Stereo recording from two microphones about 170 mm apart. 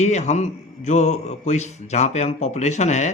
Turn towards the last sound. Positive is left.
turn(degrees=45)  # may be behind; listen again after turning